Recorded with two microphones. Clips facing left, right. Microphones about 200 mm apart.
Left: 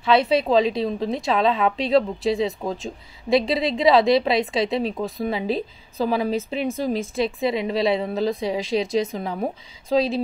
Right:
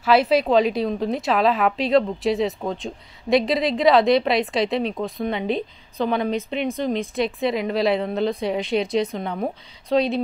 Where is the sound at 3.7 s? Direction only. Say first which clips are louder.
Even; centre (ahead or behind).